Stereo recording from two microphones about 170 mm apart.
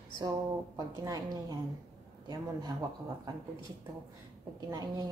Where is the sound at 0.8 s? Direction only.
25° right (ahead or behind).